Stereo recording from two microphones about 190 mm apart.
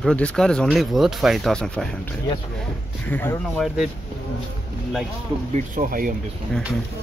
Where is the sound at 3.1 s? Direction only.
10° left (ahead or behind).